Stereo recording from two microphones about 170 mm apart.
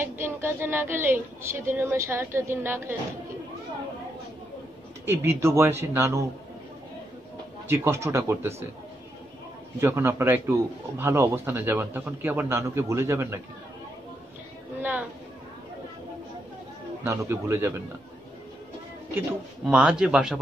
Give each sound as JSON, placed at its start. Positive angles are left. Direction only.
{"t": 0.0, "sound": "a woman's voice", "side_deg": -15}
{"t": 5.0, "sound": "a woman's voice", "side_deg": -15}
{"t": 7.6, "sound": "a woman's voice", "side_deg": -15}
{"t": 9.8, "sound": "a woman's voice", "side_deg": -15}
{"t": 14.8, "sound": "a sound", "side_deg": -10}
{"t": 17.0, "sound": "a woman's voice", "side_deg": -15}
{"t": 19.1, "sound": "a man's voice", "side_deg": -5}